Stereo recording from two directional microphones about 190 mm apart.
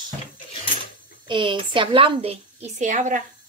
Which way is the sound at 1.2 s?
25° right (ahead or behind).